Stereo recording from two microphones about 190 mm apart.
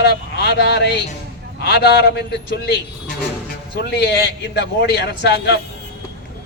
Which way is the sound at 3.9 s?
55° left (ahead or behind).